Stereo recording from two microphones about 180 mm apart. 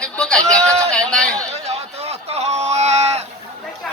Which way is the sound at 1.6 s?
35° right (ahead or behind).